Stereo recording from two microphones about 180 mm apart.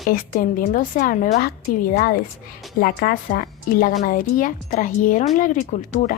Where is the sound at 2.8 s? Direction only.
55° left (ahead or behind).